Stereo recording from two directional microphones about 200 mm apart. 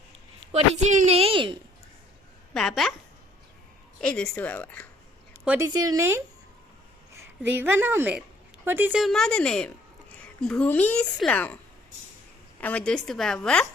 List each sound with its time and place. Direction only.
0.5 s a woman's voice: 35° right (ahead or behind)
2.5 s a woman's voice: centre (ahead or behind)
4.0 s speech: 5° left (ahead or behind)
5.5 s speech: 15° right (ahead or behind)
7.1 s a sound: 15° right (ahead or behind)
7.6 s a woman's voice: 10° right (ahead or behind); by 11.5 s 5° left (ahead or behind)
12.5 s a woman's voice: 5° left (ahead or behind)